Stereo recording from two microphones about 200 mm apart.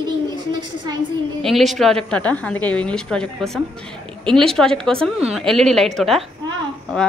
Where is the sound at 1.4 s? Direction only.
Centre (ahead or behind).